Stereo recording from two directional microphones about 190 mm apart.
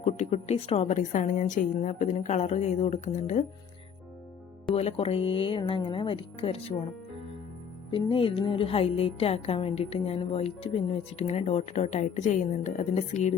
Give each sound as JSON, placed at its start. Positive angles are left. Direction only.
{"t": 0.0, "sound": "a woman's voice", "side_deg": 35}
{"t": 4.7, "sound": "speech", "side_deg": 30}
{"t": 7.9, "sound": "a woman's voice", "side_deg": 25}